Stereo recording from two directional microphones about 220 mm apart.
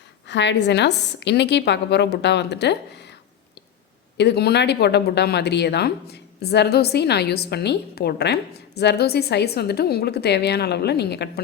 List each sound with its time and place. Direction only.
0.3 s speech: 55° left (ahead or behind)
4.2 s speech: 50° left (ahead or behind)